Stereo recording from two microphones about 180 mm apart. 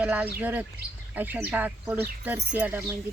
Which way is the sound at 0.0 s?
5° right (ahead or behind).